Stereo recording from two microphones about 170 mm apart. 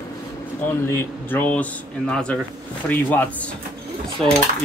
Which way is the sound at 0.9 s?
15° left (ahead or behind).